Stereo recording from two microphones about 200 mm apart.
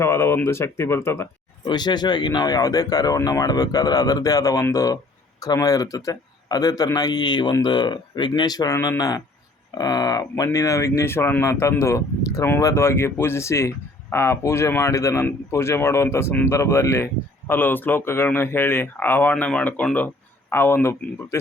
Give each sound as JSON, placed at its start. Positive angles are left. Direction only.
{"t": 0.0, "sound": "a man's voice", "side_deg": 15}